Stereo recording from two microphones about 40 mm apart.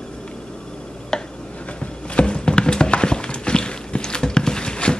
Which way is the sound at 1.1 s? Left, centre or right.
Centre.